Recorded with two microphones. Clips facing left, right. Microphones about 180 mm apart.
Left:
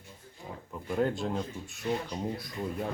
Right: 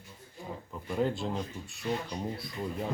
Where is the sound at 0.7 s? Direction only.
Centre (ahead or behind).